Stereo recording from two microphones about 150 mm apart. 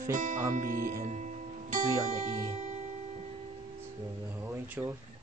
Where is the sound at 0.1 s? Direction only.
60° right (ahead or behind).